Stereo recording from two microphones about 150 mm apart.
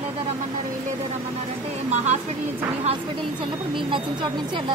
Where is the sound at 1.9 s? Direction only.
50° right (ahead or behind).